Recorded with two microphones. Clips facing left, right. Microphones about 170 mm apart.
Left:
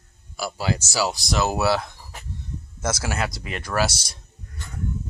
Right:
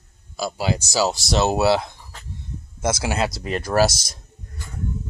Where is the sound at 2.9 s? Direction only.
25° right (ahead or behind).